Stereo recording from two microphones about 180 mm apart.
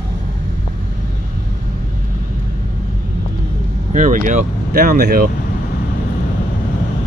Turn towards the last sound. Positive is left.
turn(degrees=-55)  # may be behind; listen again after turning